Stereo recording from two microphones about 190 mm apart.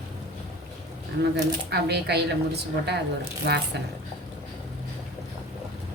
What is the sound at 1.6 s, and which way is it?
A woman's voice, 60° right (ahead or behind).